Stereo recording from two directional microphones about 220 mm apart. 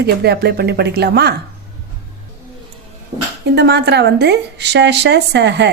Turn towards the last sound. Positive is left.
turn(degrees=-50)  # may be behind; listen again after turning